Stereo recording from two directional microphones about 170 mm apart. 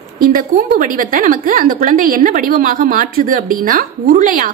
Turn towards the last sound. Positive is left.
turn(degrees=-55)  # may be behind; listen again after turning